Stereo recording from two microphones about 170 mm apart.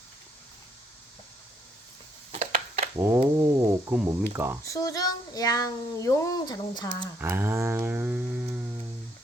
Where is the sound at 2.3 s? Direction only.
45° right (ahead or behind).